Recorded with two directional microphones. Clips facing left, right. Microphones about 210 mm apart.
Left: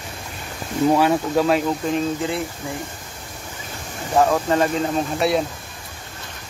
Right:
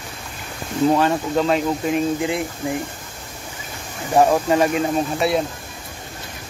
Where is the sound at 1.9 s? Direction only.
15° right (ahead or behind).